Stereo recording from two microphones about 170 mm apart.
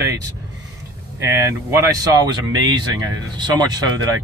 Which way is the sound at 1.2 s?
15° right (ahead or behind).